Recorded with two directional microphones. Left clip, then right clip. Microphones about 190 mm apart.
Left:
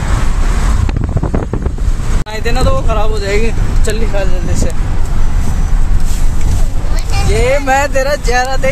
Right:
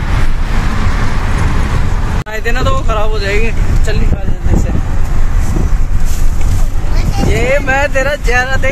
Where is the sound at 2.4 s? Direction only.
10° left (ahead or behind).